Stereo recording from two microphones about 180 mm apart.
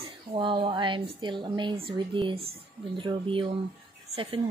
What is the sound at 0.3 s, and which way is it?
Speech, 30° right (ahead or behind).